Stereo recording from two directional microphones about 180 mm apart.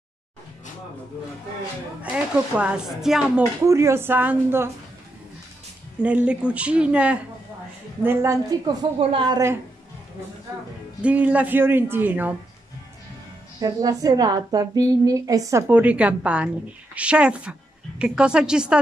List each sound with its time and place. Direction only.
2.0 s a woman's voice: 5° right (ahead or behind)
3.6 s a woman's voice: 15° right (ahead or behind)
6.0 s a woman's voice: 5° right (ahead or behind)
11.0 s a woman's voice: 5° right (ahead or behind)
13.6 s a woman's voice: 20° right (ahead or behind); by 18.8 s 5° right (ahead or behind)